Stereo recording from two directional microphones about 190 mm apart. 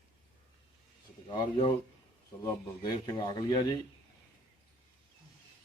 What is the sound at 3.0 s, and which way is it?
Speech, 20° left (ahead or behind).